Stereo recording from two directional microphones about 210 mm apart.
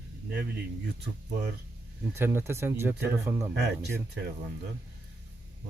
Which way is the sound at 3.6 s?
50° right (ahead or behind).